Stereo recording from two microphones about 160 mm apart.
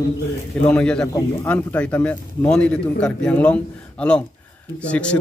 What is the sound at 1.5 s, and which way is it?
Speech, 10° left (ahead or behind).